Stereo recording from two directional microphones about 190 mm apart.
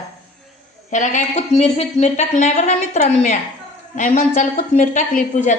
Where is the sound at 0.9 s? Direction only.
40° left (ahead or behind).